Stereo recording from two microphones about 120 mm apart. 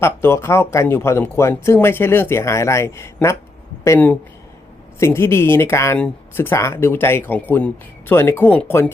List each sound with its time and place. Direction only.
0.0 s speech: 20° left (ahead or behind)